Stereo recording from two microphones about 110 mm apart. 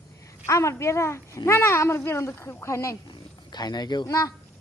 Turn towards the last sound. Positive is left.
turn(degrees=40)  # may be behind; listen again after turning